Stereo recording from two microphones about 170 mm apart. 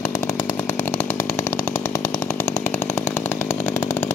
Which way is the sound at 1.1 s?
15° left (ahead or behind).